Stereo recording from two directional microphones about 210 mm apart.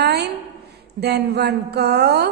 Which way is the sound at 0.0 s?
50° right (ahead or behind).